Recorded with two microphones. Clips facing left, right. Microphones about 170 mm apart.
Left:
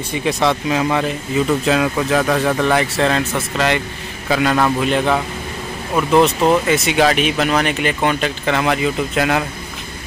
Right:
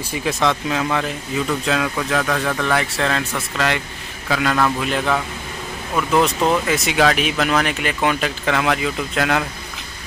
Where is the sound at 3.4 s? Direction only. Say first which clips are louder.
Left 4 dB; centre (ahead or behind); by 5.2 s 20° left (ahead or behind).